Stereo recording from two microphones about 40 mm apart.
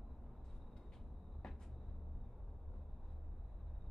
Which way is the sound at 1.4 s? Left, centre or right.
Centre.